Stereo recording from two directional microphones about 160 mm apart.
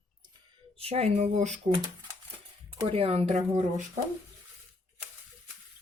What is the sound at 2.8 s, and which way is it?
Speech, 40° right (ahead or behind).